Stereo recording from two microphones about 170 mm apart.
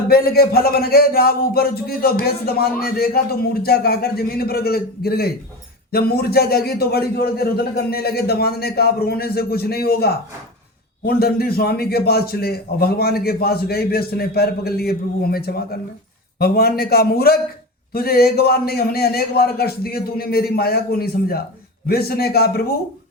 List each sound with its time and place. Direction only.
0.1 s speech: 65° left (ahead or behind)